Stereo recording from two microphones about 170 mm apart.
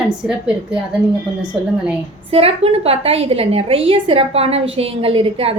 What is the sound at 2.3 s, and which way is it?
A woman's voice, 35° right (ahead or behind).